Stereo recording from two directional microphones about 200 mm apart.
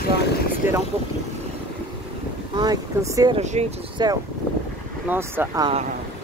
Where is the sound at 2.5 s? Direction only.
20° right (ahead or behind).